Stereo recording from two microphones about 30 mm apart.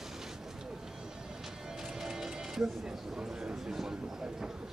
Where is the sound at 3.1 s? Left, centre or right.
Right.